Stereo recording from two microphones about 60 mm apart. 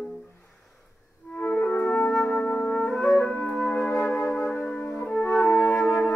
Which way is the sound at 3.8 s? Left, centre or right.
Left.